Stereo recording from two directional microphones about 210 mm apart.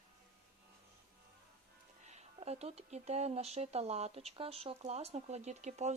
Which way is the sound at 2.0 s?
30° right (ahead or behind).